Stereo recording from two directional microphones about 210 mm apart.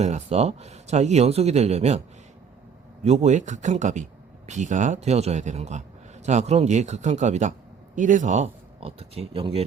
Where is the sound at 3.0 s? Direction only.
30° right (ahead or behind).